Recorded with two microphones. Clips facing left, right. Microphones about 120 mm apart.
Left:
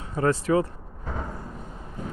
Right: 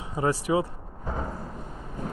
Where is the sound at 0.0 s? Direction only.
15° right (ahead or behind).